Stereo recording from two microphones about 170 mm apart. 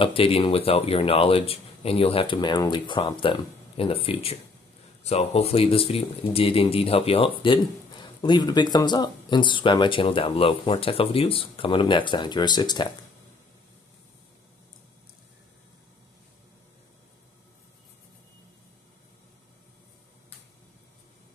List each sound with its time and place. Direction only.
0.0 s speech: 35° left (ahead or behind)